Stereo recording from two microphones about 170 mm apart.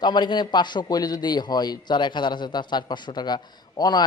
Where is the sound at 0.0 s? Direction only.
25° left (ahead or behind).